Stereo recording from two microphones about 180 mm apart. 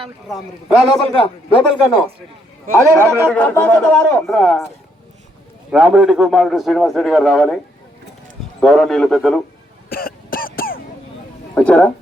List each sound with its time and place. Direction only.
0.3 s a man's voice: 5° right (ahead or behind)
1.1 s a man's voice: 30° left (ahead or behind)
3.0 s speech: 15° right (ahead or behind)
3.2 s a man's voice: 10° left (ahead or behind)
5.7 s a man's voice: 5° right (ahead or behind)
8.6 s a man's voice: centre (ahead or behind)
9.9 s throat clearing: 55° left (ahead or behind)
11.5 s speech: 5° left (ahead or behind)